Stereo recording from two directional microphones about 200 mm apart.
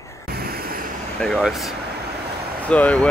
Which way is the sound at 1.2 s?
Centre (ahead or behind).